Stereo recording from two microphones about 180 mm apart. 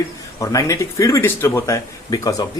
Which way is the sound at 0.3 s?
20° left (ahead or behind).